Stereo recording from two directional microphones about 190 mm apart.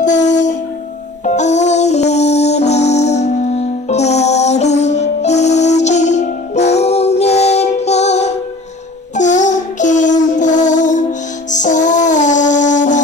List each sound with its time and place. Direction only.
0.3 s music: 40° left (ahead or behind)